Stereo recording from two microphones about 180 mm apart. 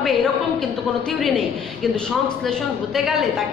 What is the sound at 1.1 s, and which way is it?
A woman's voice, centre (ahead or behind).